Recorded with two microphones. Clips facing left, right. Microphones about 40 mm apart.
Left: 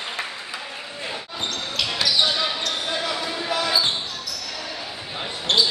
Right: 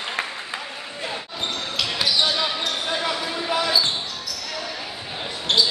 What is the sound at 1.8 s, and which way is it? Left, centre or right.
Basketball bounce, centre.